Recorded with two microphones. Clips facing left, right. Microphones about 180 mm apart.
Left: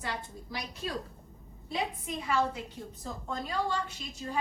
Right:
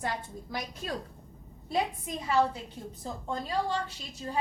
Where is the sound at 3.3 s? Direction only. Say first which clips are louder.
Right 2 dB; 35° right (ahead or behind).